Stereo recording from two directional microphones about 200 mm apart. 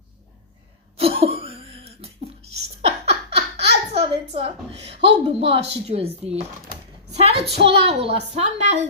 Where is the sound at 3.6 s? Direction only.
30° right (ahead or behind).